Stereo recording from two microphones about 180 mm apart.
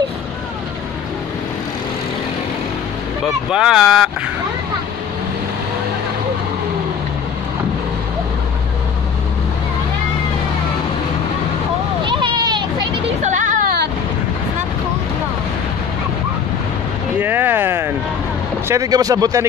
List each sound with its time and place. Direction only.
3.5 s speech: 5° right (ahead or behind)
12.1 s vehicle: 25° right (ahead or behind)
13.2 s music: 45° right (ahead or behind)
17.2 s a sound: 10° right (ahead or behind)
18.7 s speech: 20° right (ahead or behind)